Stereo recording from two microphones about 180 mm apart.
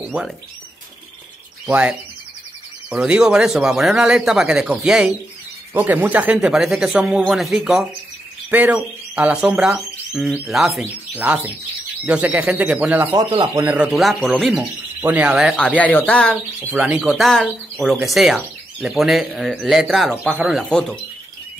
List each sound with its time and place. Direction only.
0.0 s speech: 5° right (ahead or behind)
1.7 s speech: 5° right (ahead or behind)
13.1 s speech: 20° right (ahead or behind)
13.7 s speech: 5° right (ahead or behind)
16.8 s speech: 5° right (ahead or behind)